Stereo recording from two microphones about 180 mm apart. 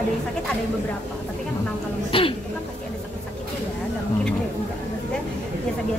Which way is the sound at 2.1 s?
30° left (ahead or behind).